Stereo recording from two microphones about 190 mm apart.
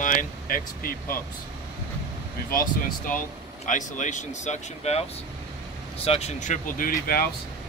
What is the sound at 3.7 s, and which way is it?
Speech, 40° left (ahead or behind).